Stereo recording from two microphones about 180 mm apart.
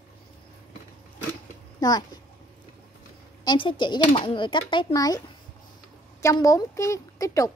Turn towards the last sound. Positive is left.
turn(degrees=20)  # may be behind; listen again after turning